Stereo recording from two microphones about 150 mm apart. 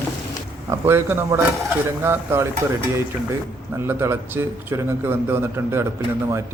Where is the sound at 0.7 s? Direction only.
15° right (ahead or behind).